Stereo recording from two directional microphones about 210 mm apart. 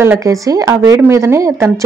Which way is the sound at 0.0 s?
15° right (ahead or behind).